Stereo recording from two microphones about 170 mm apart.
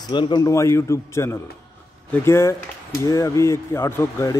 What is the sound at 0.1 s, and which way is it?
Speech, 25° left (ahead or behind).